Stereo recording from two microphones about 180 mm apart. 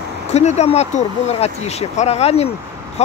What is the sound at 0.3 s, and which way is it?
Speech, 40° left (ahead or behind).